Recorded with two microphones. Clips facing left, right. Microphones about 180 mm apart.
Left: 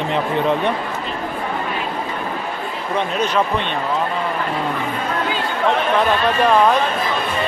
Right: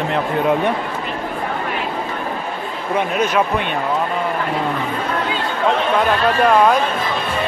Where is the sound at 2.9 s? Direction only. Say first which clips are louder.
Right 2 dB; 10° right (ahead or behind).